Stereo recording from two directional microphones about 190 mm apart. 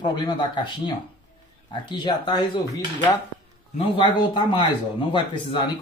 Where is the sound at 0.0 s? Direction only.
25° left (ahead or behind).